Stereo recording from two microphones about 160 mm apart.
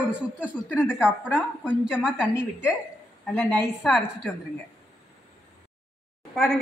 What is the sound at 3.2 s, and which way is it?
Speech, 10° left (ahead or behind).